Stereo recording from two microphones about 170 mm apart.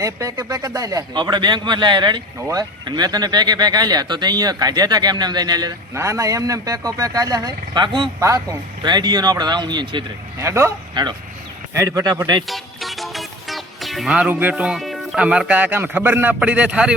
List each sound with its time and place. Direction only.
0.0 s a man's voice: 20° right (ahead or behind)
10.4 s a man's voice: 15° right (ahead or behind)
12.5 s speech: centre (ahead or behind)